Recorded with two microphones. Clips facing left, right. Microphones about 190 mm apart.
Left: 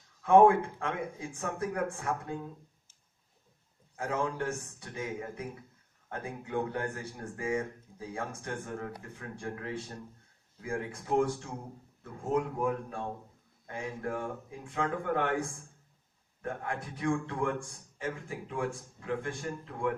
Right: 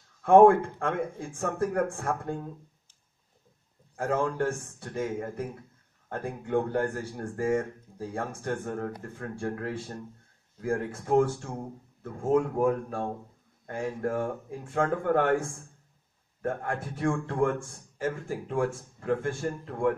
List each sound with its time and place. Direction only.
0.2 s a man's voice: 50° right (ahead or behind)
3.9 s a man's voice: 50° right (ahead or behind)
16.9 s a man's voice: 50° right (ahead or behind)